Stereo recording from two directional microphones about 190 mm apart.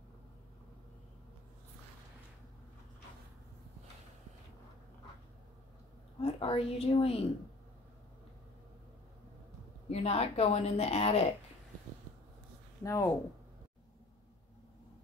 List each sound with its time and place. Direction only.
6.2 s a woman's voice: 30° left (ahead or behind)
9.8 s a woman's voice: 35° left (ahead or behind)
12.8 s speech: 15° left (ahead or behind)